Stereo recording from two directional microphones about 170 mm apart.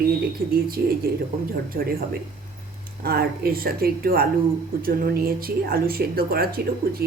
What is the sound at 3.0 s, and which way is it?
Speech, 65° right (ahead or behind).